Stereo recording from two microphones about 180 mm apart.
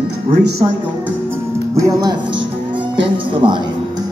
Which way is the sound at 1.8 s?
20° right (ahead or behind).